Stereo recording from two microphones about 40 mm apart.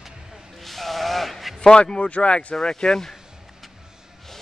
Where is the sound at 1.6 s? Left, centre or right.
Left.